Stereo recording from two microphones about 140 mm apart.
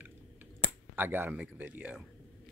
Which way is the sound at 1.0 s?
15° right (ahead or behind).